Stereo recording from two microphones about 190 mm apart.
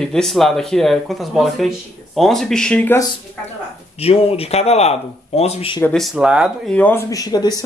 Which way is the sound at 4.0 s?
30° left (ahead or behind).